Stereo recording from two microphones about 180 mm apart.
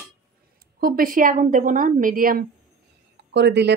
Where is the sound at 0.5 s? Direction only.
55° right (ahead or behind).